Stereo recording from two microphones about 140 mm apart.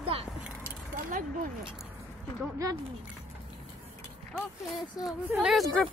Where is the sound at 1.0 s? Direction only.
70° right (ahead or behind).